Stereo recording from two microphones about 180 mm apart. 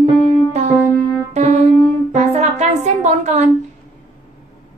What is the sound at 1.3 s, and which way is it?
Music, 40° right (ahead or behind).